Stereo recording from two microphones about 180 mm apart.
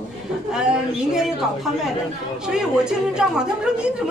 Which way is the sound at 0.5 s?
5° right (ahead or behind).